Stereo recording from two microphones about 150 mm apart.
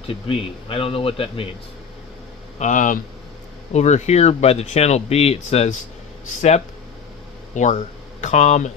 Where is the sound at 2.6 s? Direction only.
55° left (ahead or behind).